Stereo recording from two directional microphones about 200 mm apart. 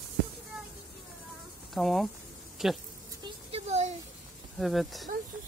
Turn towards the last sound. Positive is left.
turn(degrees=0)  # may be behind; listen again after turning